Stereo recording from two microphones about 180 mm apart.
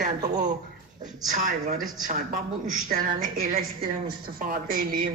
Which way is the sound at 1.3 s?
45° right (ahead or behind).